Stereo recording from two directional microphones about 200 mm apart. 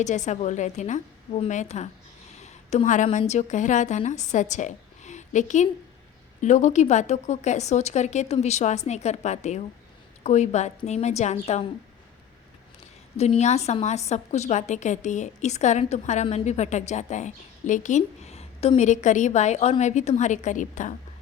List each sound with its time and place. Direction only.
0.0 s a woman's voice: 35° left (ahead or behind)
13.1 s a woman's voice: 35° left (ahead or behind)